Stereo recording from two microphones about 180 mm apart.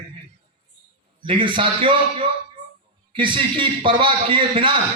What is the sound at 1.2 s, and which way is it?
A man's voice, 30° right (ahead or behind).